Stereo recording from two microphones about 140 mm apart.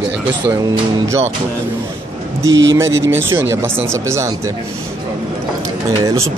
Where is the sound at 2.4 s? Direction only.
20° right (ahead or behind).